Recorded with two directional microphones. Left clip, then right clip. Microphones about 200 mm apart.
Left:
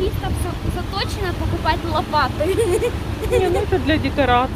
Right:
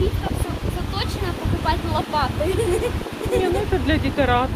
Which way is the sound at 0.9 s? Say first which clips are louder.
Left 3 dB; 45° left (ahead or behind).